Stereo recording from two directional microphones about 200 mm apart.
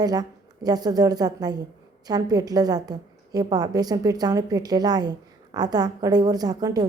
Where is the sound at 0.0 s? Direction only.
20° right (ahead or behind).